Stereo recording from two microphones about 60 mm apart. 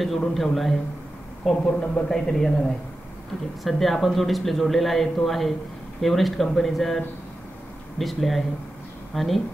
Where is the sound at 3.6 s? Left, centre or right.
Centre.